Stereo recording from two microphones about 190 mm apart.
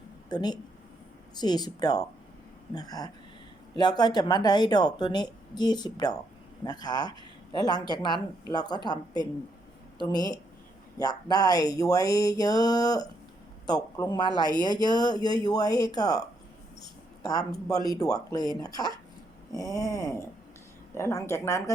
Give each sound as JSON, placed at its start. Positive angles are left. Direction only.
{"t": 0.3, "sound": "speech", "side_deg": 20}
{"t": 19.9, "sound": "speech", "side_deg": 15}